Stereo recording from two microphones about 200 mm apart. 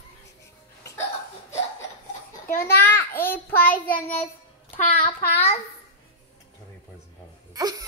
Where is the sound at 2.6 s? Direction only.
10° left (ahead or behind).